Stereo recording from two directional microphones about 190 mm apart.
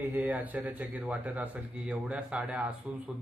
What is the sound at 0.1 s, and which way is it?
Speech, 10° right (ahead or behind).